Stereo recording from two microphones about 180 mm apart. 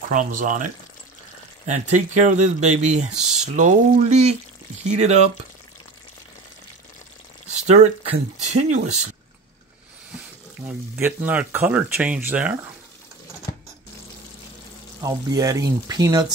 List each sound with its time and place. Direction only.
0.1 s speech: 45° right (ahead or behind)
1.7 s speech: 40° right (ahead or behind)
3.2 s a sound: 5° right (ahead or behind)
3.5 s speech: 45° right (ahead or behind)
7.5 s speech: 40° right (ahead or behind)
11.0 s speech: 10° right (ahead or behind)
15.0 s speech: 20° right (ahead or behind)